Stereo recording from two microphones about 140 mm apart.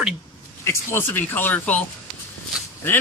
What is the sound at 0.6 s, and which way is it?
Speech, 20° left (ahead or behind).